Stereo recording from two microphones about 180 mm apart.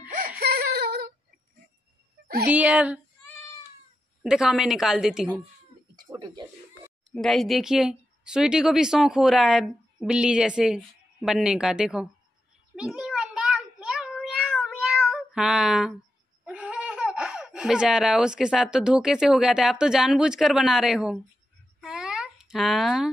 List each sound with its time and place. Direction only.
0.4 s whimper: 60° right (ahead or behind)
2.5 s speech: 10° right (ahead or behind)
4.2 s speech: 5° right (ahead or behind)
6.1 s speech: 25° right (ahead or behind)
7.1 s speech: centre (ahead or behind)
12.7 s cat: 5° right (ahead or behind)
16.4 s speech: 5° right (ahead or behind)
21.8 s a sound: 5° right (ahead or behind)